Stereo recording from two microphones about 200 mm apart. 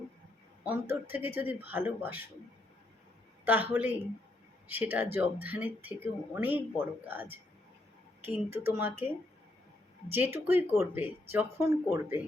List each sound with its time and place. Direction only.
0.6 s speech: 10° right (ahead or behind)
3.4 s speech: 10° right (ahead or behind)
10.1 s speech: 10° right (ahead or behind)